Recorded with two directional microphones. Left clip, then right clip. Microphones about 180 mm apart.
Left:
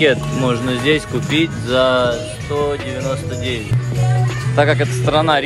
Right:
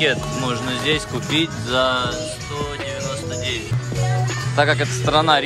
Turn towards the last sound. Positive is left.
turn(degrees=-25)  # may be behind; listen again after turning